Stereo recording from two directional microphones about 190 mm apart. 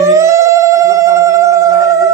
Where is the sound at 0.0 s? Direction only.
15° right (ahead or behind).